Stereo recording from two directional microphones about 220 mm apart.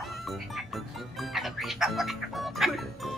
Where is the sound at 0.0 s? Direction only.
Centre (ahead or behind).